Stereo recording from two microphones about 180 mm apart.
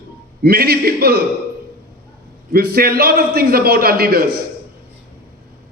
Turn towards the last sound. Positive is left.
turn(degrees=-55)  # may be behind; listen again after turning